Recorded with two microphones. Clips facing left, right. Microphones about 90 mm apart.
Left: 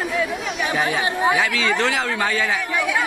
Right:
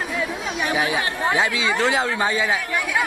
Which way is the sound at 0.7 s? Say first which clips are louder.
Left 2 dB; 10° right (ahead or behind).